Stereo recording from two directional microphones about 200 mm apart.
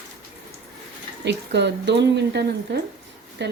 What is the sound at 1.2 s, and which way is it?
Speech, 60° right (ahead or behind).